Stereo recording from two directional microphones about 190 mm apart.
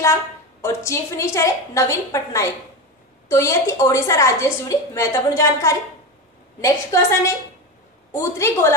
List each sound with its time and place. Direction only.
0.0 s a woman's voice: 15° left (ahead or behind)